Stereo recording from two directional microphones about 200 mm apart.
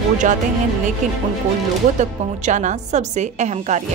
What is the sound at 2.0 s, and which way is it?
A woman's voice, 35° right (ahead or behind).